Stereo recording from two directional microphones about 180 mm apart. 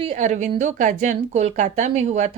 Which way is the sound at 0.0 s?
40° right (ahead or behind).